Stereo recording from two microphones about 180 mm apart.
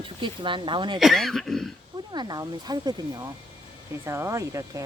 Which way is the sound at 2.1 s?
25° right (ahead or behind).